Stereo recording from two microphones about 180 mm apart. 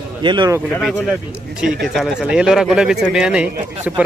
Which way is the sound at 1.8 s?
Centre (ahead or behind).